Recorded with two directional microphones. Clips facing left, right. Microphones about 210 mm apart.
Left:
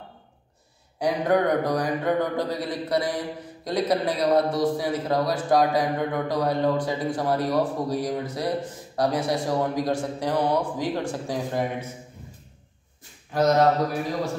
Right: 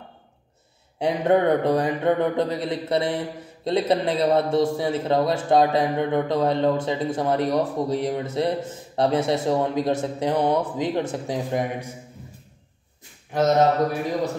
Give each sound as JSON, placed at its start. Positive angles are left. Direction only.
{"t": 0.9, "sound": "a man's voice", "side_deg": -25}
{"t": 13.3, "sound": "a man's voice", "side_deg": -20}